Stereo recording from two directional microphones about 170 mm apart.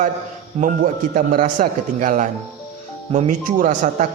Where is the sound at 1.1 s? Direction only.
55° right (ahead or behind).